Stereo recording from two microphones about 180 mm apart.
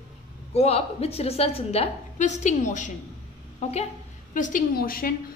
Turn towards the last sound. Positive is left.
turn(degrees=55)  # may be behind; listen again after turning